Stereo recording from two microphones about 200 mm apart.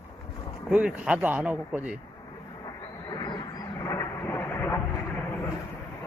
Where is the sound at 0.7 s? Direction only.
5° right (ahead or behind).